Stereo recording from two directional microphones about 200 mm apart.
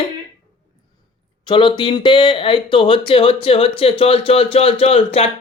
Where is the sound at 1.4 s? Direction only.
25° left (ahead or behind).